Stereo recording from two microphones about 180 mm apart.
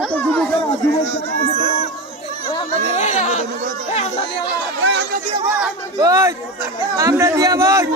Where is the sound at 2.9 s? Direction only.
40° left (ahead or behind).